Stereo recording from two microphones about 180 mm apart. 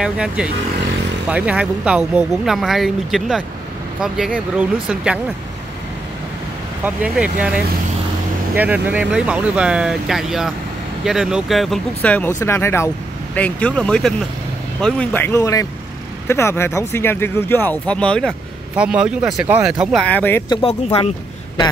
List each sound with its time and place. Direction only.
0.0 s speech: 5° right (ahead or behind)
6.8 s speech: 10° right (ahead or behind)
18.8 s speech: 5° right (ahead or behind)
20.4 s speech: 30° left (ahead or behind)